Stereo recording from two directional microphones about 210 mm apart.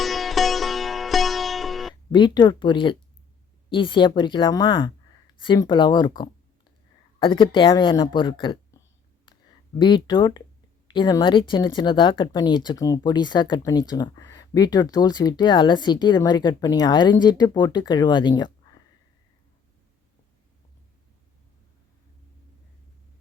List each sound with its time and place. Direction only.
0.0 s music: centre (ahead or behind)
2.1 s speech: 20° left (ahead or behind)
9.7 s speech: 20° left (ahead or behind)